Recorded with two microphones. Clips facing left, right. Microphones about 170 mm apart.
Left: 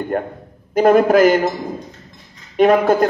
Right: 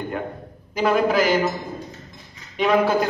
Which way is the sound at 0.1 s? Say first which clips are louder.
Left 6 dB; 50° left (ahead or behind).